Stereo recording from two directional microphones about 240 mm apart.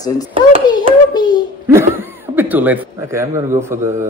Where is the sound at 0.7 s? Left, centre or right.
Centre.